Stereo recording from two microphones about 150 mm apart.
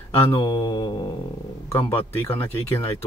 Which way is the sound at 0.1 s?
15° left (ahead or behind).